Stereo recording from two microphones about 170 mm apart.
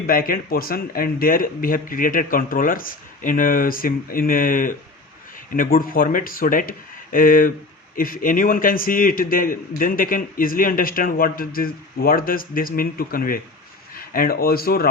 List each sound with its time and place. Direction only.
0.1 s a man's voice: 60° left (ahead or behind)